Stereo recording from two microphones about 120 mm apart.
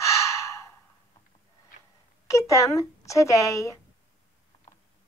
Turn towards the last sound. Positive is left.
turn(degrees=25)  # may be behind; listen again after turning